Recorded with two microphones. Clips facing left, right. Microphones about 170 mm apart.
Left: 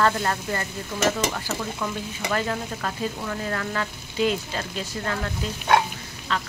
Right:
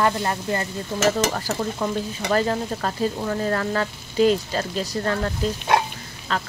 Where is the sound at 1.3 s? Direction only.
40° right (ahead or behind).